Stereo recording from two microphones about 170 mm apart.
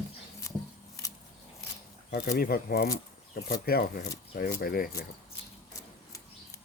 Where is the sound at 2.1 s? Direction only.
65° left (ahead or behind).